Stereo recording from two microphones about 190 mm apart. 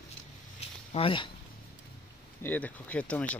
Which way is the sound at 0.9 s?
25° left (ahead or behind).